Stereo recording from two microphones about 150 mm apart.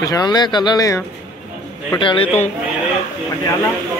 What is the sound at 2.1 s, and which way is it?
Speech, 15° left (ahead or behind).